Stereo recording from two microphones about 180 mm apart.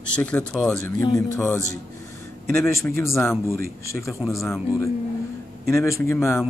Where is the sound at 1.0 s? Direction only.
20° left (ahead or behind).